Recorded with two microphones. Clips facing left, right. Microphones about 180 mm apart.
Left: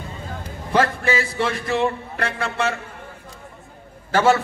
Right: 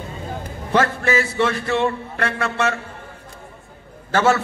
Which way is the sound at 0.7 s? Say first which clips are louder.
Right 1 dB; 30° left (ahead or behind).